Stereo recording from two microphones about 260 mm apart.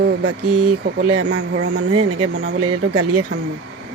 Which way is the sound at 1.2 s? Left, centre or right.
Right.